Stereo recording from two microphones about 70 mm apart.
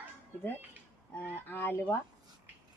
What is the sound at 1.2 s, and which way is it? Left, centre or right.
Speech, left.